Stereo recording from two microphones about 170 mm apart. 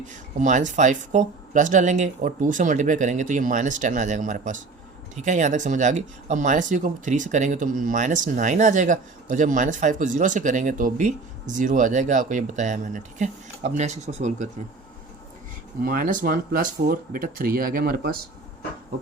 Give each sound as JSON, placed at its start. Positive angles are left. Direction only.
{"t": 0.0, "sound": "speech", "side_deg": -45}
{"t": 15.8, "sound": "speech", "side_deg": -55}